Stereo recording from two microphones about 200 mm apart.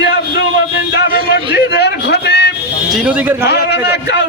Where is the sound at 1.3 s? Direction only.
55° left (ahead or behind).